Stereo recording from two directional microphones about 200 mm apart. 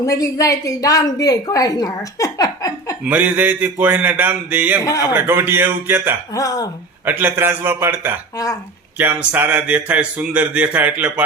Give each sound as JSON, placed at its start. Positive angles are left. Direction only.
{"t": 0.0, "sound": "a woman's voice", "side_deg": 15}
{"t": 3.1, "sound": "speech", "side_deg": -10}
{"t": 6.3, "sound": "a woman's voice", "side_deg": 20}
{"t": 7.0, "sound": "speech", "side_deg": -10}